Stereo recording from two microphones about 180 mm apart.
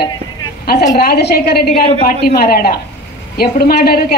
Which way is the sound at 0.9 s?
65° left (ahead or behind).